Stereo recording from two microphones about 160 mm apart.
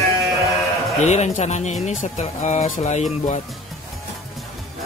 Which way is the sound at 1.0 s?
45° left (ahead or behind).